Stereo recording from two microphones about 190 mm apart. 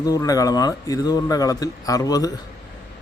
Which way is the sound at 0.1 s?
20° left (ahead or behind).